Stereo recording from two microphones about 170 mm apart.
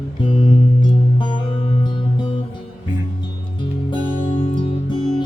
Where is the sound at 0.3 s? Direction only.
25° left (ahead or behind).